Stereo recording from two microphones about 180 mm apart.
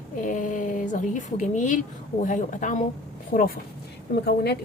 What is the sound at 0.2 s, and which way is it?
A woman's voice, 45° left (ahead or behind).